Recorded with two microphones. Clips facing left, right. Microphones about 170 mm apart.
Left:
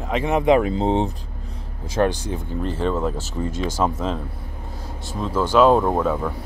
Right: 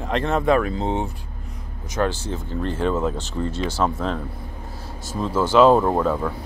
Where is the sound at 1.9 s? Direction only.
15° left (ahead or behind).